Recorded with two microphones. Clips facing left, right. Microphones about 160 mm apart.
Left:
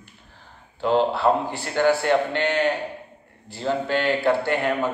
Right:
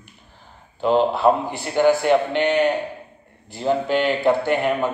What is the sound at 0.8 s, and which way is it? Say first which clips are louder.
A man's voice: right 3 dB; 15° right (ahead or behind).